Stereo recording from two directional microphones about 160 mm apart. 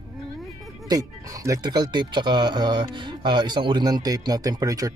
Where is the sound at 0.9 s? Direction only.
20° right (ahead or behind).